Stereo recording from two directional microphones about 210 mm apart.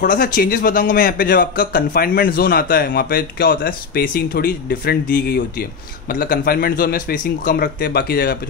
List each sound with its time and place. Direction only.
0.0 s a man's voice: 40° left (ahead or behind)